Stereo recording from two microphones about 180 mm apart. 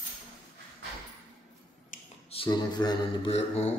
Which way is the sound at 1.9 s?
45° left (ahead or behind).